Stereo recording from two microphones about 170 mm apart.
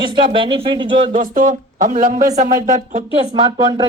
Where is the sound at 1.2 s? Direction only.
55° right (ahead or behind).